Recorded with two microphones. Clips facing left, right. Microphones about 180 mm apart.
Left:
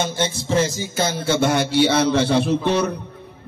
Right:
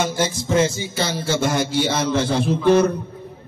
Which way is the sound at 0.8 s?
50° left (ahead or behind).